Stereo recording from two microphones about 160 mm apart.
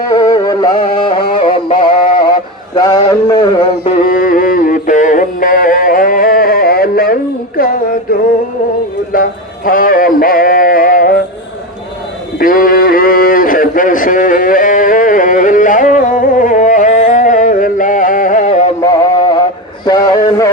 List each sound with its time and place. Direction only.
0.1 s music: 25° left (ahead or behind)
2.7 s a sound: 25° left (ahead or behind)
3.6 s music: 45° left (ahead or behind); by 7.9 s 65° left (ahead or behind)
9.1 s bleat: 60° left (ahead or behind)
12.4 s a sound: 60° left (ahead or behind)
18.8 s music: 25° left (ahead or behind)